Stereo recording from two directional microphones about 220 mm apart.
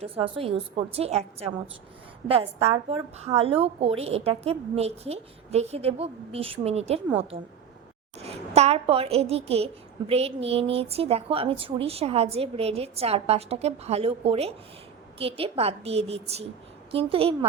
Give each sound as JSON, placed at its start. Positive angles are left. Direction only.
{"t": 0.0, "sound": "a woman's voice", "side_deg": -25}
{"t": 7.3, "sound": "speech", "side_deg": -40}
{"t": 8.2, "sound": "a woman's voice", "side_deg": -30}